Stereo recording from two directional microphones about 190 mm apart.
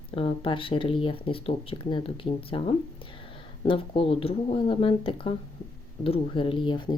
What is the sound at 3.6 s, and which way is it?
Speech, 30° left (ahead or behind).